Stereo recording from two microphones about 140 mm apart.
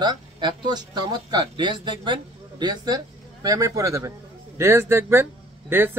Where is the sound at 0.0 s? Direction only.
30° right (ahead or behind).